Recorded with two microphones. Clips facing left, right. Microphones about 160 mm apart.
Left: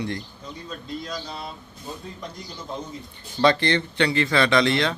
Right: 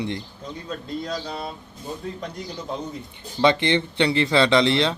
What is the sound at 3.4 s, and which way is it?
Speech, 20° right (ahead or behind).